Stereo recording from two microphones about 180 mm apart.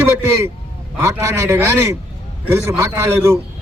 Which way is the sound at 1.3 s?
15° right (ahead or behind).